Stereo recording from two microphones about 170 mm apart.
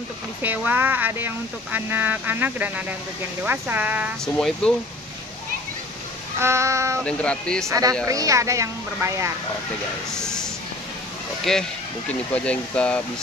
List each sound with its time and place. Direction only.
0.4 s speech: 10° right (ahead or behind)
4.4 s speech: 5° left (ahead or behind)
6.4 s speech: 15° right (ahead or behind)
7.1 s speech: 5° left (ahead or behind)
7.6 s speech: 20° right (ahead or behind)
10.1 s a sound: 5° left (ahead or behind)
11.5 s speech: 5° left (ahead or behind)